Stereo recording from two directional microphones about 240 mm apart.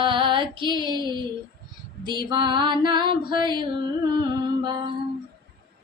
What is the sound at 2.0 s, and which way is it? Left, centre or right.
Female singing, centre.